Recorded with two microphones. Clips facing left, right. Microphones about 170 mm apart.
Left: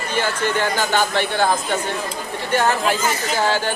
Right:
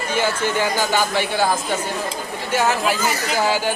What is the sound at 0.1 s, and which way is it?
Speech, 10° right (ahead or behind).